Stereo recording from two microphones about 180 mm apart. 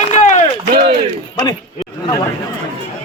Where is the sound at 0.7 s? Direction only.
55° right (ahead or behind).